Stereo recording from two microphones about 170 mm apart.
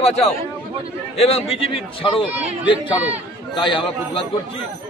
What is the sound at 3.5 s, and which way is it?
Speech, 30° left (ahead or behind).